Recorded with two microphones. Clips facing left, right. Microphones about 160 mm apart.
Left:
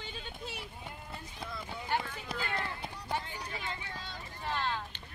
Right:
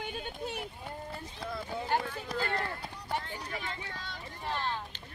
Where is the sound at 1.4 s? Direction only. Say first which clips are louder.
Right 5 dB; 50° right (ahead or behind).